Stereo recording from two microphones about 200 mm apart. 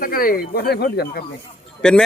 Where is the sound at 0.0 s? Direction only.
45° left (ahead or behind).